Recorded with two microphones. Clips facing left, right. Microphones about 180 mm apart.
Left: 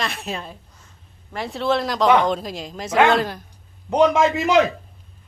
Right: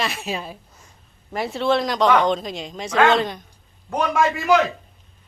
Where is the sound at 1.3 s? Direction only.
5° right (ahead or behind).